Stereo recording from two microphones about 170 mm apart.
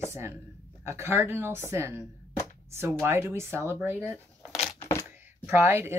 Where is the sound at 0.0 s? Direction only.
15° right (ahead or behind).